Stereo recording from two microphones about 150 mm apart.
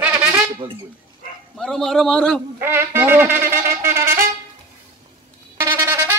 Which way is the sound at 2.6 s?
15° right (ahead or behind).